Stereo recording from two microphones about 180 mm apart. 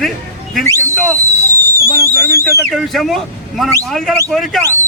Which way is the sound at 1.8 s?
15° left (ahead or behind).